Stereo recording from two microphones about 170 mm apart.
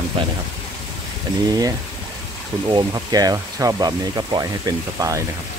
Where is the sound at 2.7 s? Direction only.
25° right (ahead or behind).